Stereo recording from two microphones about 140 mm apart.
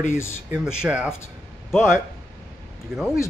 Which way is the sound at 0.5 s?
5° right (ahead or behind).